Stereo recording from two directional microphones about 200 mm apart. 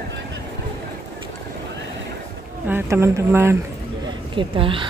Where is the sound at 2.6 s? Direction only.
10° right (ahead or behind).